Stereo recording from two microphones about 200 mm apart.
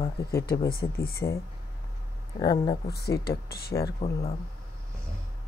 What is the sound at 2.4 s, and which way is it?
Speech, 20° left (ahead or behind).